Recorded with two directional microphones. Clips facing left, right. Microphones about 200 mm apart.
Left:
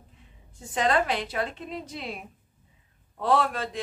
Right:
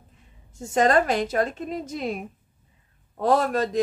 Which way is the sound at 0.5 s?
45° right (ahead or behind).